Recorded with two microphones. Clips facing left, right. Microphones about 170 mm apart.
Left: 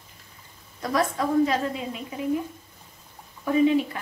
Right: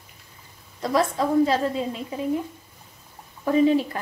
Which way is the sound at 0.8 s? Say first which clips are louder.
Right 2 dB; 25° right (ahead or behind).